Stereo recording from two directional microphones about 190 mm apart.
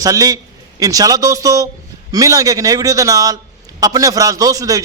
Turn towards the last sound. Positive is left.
turn(degrees=-20)  # may be behind; listen again after turning